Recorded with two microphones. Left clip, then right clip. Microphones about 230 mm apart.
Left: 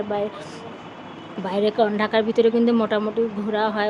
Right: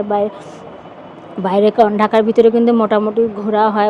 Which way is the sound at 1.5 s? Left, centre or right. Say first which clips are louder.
Right 9 dB; right.